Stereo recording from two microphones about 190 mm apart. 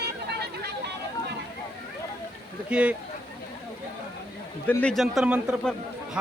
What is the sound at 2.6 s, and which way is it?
Speech, 5° right (ahead or behind).